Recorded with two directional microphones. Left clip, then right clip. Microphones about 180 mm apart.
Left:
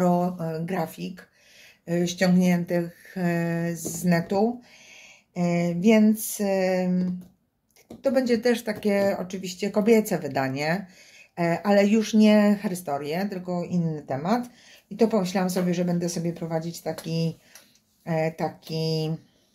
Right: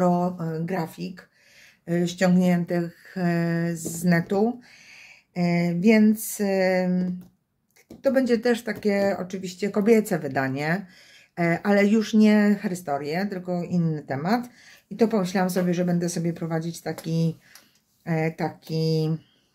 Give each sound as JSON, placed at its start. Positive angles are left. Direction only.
{"t": 0.0, "sound": "a sound", "side_deg": -15}
{"t": 1.9, "sound": "speech", "side_deg": -25}
{"t": 8.0, "sound": "speech", "side_deg": -25}